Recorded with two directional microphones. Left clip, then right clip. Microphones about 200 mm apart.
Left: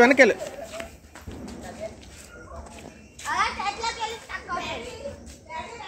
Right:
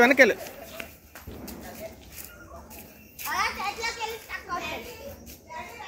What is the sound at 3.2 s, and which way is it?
Children playing, 30° right (ahead or behind).